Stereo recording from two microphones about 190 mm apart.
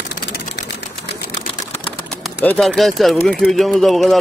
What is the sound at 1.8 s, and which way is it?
Bird, 5° left (ahead or behind).